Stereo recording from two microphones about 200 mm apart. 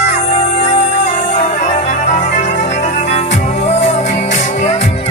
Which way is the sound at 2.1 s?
35° left (ahead or behind).